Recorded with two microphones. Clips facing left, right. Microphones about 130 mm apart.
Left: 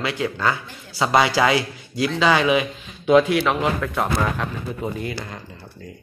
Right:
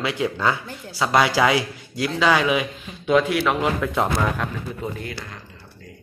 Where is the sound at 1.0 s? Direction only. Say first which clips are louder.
Left 1 dB; 5° left (ahead or behind).